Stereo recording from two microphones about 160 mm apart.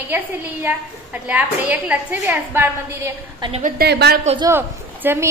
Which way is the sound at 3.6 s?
80° right.